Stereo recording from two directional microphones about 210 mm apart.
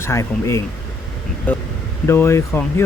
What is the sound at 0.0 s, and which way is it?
Speech, 15° left (ahead or behind).